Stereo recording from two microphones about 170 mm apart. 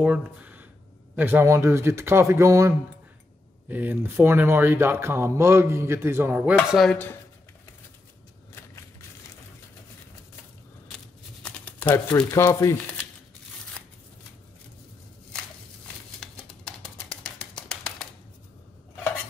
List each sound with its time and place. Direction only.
0.0 s speech: 10° right (ahead or behind)
11.4 s crumpling: 10° left (ahead or behind)
12.4 s speech: 15° left (ahead or behind)